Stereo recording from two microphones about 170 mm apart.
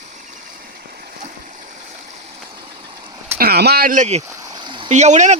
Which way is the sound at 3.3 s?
65° right (ahead or behind).